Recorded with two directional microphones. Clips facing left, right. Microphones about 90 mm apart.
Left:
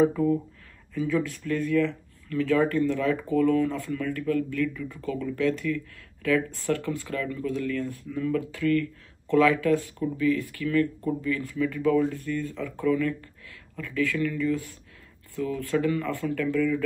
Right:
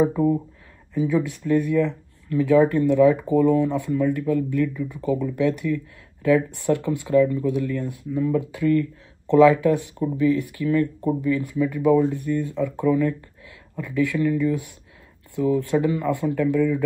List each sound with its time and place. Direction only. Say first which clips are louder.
0.9 s speech: right 4 dB; 15° right (ahead or behind)